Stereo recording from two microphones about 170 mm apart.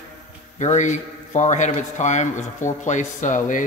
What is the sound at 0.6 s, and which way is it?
Speech, 45° left (ahead or behind).